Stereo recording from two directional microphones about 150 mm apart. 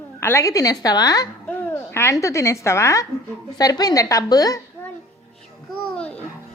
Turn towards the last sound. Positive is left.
turn(degrees=10)  # may be behind; listen again after turning